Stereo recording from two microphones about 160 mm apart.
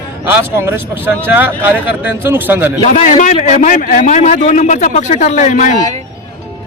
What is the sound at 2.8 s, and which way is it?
A man's voice, 45° left (ahead or behind).